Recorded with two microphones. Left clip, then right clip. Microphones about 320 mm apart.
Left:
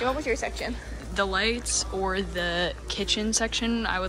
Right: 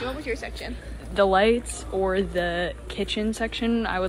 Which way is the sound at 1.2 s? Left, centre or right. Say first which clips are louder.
Right 6 dB; centre.